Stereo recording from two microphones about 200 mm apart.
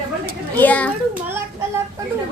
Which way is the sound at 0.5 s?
10° left (ahead or behind).